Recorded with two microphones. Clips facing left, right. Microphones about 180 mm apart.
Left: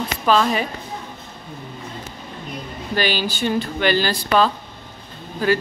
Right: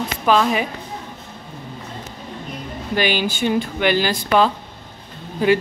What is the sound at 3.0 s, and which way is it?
Speech, 15° right (ahead or behind).